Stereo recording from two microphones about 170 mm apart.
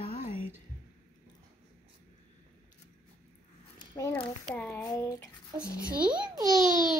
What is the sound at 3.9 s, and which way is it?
A child's voice, 20° left (ahead or behind).